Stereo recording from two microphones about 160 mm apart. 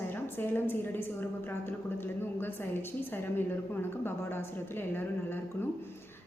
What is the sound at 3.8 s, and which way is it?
A woman's voice, 15° left (ahead or behind).